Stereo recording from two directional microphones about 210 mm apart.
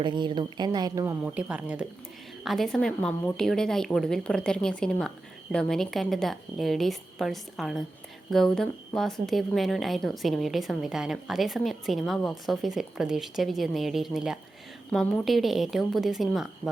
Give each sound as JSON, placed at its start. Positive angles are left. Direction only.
{"t": 0.0, "sound": "a woman's voice", "side_deg": -20}